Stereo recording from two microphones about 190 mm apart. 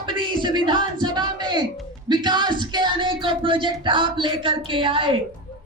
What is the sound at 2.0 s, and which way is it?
Music, 25° right (ahead or behind).